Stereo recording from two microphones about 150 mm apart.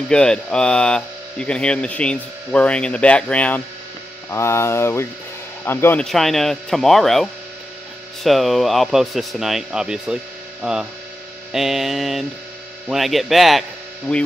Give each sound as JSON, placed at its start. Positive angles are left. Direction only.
{"t": 0.1, "sound": "speech", "side_deg": 5}
{"t": 6.0, "sound": "speech", "side_deg": 0}
{"t": 10.6, "sound": "mains hum", "side_deg": -5}
{"t": 11.5, "sound": "speech", "side_deg": 0}